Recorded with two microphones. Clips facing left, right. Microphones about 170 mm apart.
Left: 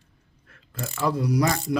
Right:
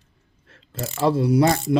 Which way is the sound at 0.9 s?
30° right (ahead or behind).